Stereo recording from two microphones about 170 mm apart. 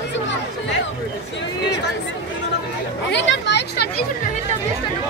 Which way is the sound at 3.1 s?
90° left.